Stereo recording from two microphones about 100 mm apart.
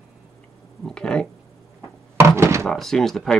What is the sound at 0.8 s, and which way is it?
Speech, 10° left (ahead or behind).